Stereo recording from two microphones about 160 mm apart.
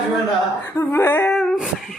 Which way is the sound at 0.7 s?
15° left (ahead or behind).